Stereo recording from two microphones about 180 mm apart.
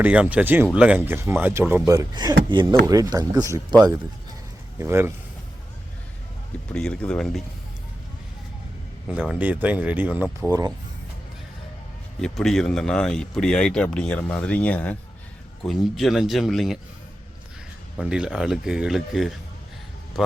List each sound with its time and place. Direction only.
0.0 s speech: 10° right (ahead or behind)
4.8 s speech: 15° right (ahead or behind)
6.7 s speech: 5° left (ahead or behind)
9.2 s speech: 5° right (ahead or behind)
10.4 s speech: 20° right (ahead or behind)
12.2 s speech: 5° left (ahead or behind)
17.9 s speech: 5° right (ahead or behind)